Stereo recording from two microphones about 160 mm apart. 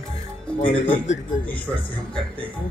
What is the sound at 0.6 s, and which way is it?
Speech, 55° left (ahead or behind).